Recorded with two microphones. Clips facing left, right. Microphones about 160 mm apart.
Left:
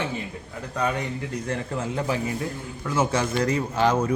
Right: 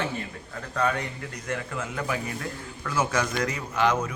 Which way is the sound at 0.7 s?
20° left (ahead or behind).